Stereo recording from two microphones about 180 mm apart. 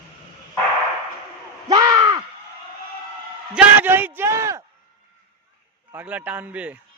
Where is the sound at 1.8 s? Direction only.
25° right (ahead or behind).